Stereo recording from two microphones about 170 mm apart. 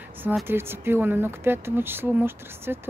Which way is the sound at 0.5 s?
15° right (ahead or behind).